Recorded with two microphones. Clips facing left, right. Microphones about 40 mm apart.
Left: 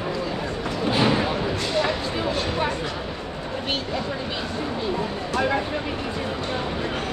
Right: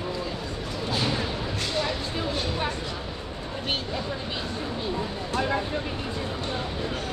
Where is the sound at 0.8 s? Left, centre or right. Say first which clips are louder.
Left 7 dB; left.